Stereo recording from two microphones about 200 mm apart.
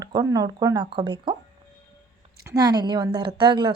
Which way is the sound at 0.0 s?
20° right (ahead or behind).